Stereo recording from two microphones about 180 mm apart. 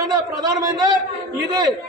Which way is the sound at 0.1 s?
20° right (ahead or behind).